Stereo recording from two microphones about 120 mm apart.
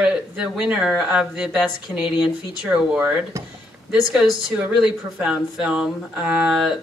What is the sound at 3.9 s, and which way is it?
Speech, 5° right (ahead or behind).